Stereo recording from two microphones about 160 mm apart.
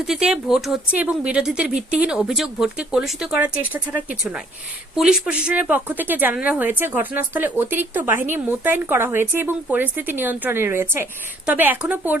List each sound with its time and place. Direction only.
0.1 s speech: 5° right (ahead or behind)